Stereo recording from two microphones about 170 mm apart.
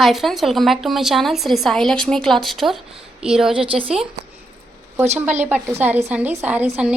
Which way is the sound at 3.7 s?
30° right (ahead or behind).